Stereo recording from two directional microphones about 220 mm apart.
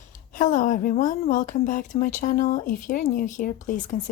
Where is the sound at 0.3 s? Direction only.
35° left (ahead or behind).